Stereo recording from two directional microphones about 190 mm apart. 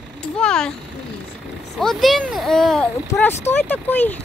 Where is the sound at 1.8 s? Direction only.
Centre (ahead or behind).